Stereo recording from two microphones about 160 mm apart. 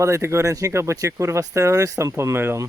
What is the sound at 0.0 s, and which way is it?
Speech, 20° right (ahead or behind).